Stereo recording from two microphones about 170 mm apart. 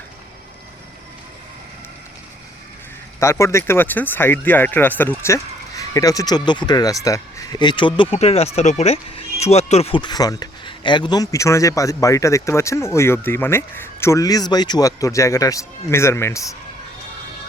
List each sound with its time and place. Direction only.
3.2 s speech: 15° left (ahead or behind)